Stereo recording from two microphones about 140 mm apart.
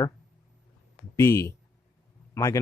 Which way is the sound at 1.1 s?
20° left (ahead or behind).